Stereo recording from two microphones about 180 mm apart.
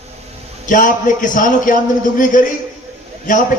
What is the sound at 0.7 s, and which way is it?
A man's voice, 45° left (ahead or behind).